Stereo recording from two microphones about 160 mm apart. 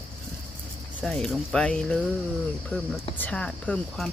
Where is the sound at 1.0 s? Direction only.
5° left (ahead or behind).